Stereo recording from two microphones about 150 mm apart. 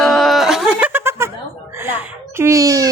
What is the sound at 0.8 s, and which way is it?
Laughter, 15° right (ahead or behind).